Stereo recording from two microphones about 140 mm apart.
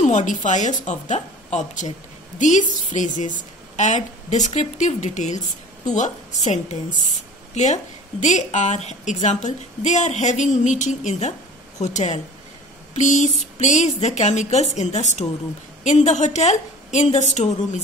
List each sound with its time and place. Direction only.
0.0 s a woman's voice: 60° left (ahead or behind)